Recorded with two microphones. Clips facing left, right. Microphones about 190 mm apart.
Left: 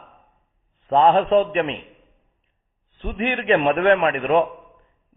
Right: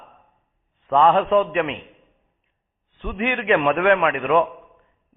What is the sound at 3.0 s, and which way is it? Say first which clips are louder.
A man's voice: even; 35° left (ahead or behind).